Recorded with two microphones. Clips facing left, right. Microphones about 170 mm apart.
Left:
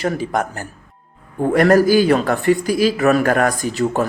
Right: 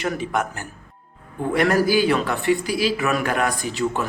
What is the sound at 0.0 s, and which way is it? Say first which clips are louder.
Speech: left 4 dB; 35° left (ahead or behind).